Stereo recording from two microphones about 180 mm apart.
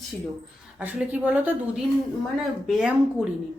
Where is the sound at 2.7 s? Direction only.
Centre (ahead or behind).